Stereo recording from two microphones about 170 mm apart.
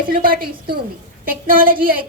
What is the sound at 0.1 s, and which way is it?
A woman's voice, 60° right (ahead or behind).